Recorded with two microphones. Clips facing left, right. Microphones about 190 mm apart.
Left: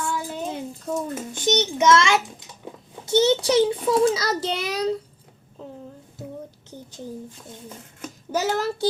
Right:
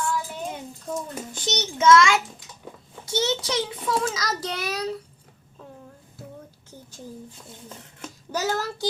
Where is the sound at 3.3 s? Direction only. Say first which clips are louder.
Left 8 dB; 30° left (ahead or behind).